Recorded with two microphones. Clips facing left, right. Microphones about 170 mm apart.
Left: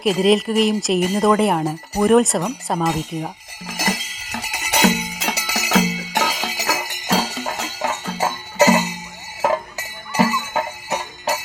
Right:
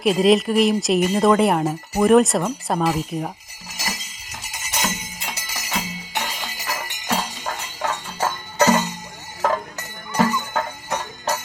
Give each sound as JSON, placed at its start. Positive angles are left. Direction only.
{"t": 0.0, "sound": "speech", "side_deg": 0}
{"t": 3.8, "sound": "music", "side_deg": 75}
{"t": 8.2, "sound": "music", "side_deg": 15}
{"t": 10.2, "sound": "music", "side_deg": 15}